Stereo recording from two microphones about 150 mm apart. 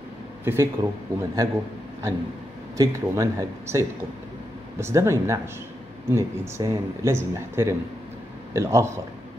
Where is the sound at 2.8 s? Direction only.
20° right (ahead or behind).